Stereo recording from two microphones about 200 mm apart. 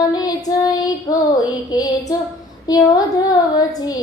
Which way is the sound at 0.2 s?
20° left (ahead or behind).